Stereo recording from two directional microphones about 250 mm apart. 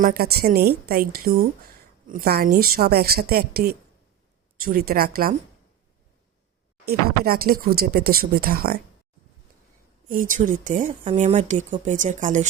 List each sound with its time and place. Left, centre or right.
0.0 s speech: right
6.8 s speech: right
10.1 s speech: right